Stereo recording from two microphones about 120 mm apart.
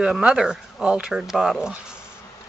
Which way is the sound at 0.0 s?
10° right (ahead or behind).